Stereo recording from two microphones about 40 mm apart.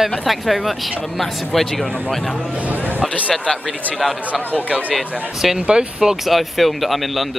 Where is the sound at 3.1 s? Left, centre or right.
Left.